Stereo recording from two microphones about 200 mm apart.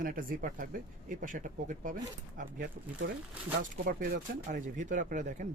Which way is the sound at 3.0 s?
55° right (ahead or behind).